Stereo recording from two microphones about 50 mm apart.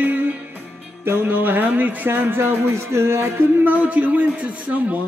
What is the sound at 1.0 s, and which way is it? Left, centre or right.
Speech, right.